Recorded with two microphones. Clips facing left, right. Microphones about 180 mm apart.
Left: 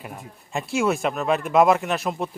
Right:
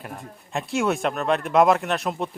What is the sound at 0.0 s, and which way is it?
A man's voice, centre (ahead or behind).